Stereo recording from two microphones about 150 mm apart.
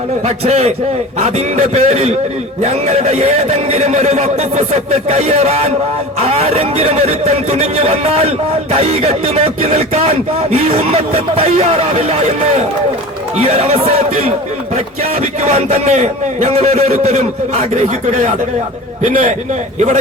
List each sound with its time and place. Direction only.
0.3 s speech: 45° right (ahead or behind)